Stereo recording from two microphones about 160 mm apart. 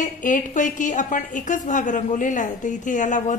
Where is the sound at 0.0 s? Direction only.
55° left (ahead or behind).